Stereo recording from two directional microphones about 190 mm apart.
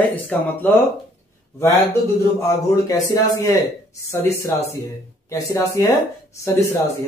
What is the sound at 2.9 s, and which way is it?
Speech, 15° left (ahead or behind).